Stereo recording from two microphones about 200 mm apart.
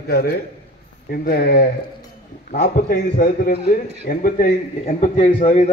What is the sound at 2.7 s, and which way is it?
A man's voice, 45° left (ahead or behind).